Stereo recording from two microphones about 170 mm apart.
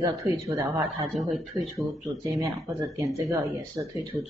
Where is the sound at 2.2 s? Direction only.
20° right (ahead or behind).